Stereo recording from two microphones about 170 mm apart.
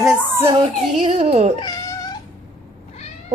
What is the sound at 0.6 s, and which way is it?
A child's voice, 30° right (ahead or behind).